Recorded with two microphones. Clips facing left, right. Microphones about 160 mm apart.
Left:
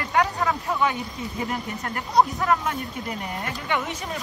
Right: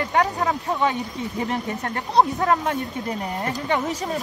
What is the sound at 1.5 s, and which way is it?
Speech, 30° right (ahead or behind).